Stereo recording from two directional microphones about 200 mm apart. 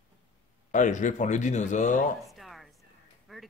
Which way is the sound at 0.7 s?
40° left (ahead or behind).